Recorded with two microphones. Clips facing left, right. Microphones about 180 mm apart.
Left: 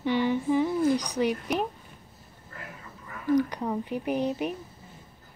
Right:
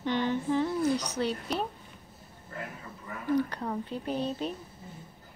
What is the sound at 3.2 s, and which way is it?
A woman's voice, 15° left (ahead or behind).